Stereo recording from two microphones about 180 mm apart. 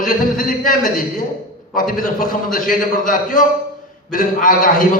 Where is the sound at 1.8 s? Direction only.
50° left (ahead or behind).